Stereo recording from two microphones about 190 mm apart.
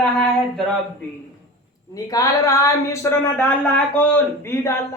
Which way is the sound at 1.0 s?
10° left (ahead or behind).